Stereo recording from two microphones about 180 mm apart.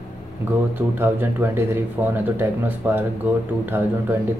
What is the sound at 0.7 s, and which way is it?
Speech, 10° right (ahead or behind).